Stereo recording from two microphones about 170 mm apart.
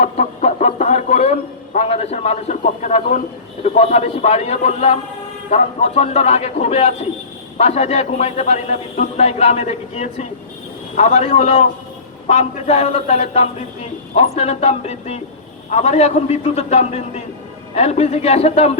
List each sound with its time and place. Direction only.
0.0 s a man's voice: 40° left (ahead or behind)